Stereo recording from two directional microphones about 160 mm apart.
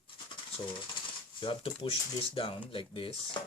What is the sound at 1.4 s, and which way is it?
Speech, 30° left (ahead or behind).